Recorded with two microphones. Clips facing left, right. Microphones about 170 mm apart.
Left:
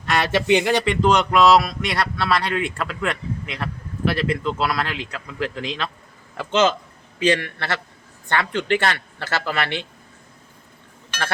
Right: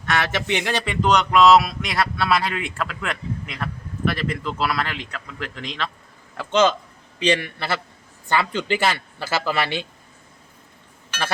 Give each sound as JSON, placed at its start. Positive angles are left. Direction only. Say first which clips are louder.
{"t": 0.1, "sound": "speech", "louder": "left 5 dB", "side_deg": 15}
{"t": 7.3, "sound": "speech", "louder": "even", "side_deg": -10}